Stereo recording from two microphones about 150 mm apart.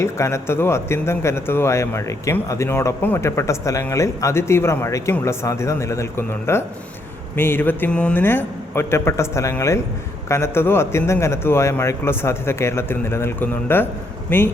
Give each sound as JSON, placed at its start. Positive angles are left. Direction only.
{"t": 0.0, "sound": "a man's voice", "side_deg": 20}